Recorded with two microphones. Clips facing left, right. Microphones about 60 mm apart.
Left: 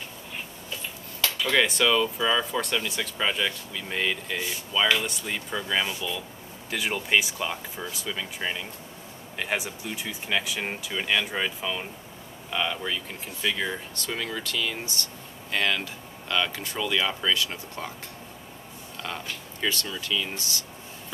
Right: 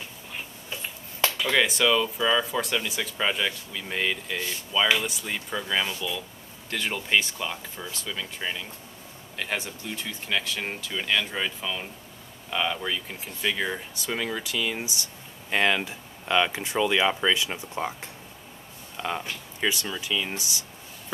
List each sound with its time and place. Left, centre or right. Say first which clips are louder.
1.4 s speech: left 1 dB; centre
18.9 s speech: right 4 dB; centre